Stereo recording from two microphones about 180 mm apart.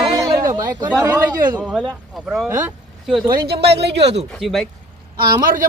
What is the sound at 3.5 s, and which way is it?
Speech, 65° right (ahead or behind).